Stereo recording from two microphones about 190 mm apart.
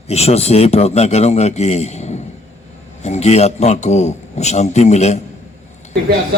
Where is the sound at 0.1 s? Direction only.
35° left (ahead or behind).